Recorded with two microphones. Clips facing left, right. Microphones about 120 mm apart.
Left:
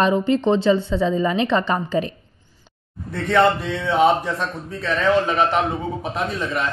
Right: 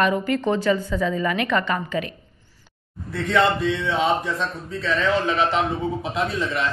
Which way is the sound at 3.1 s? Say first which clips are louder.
Left 3 dB; 50° left (ahead or behind).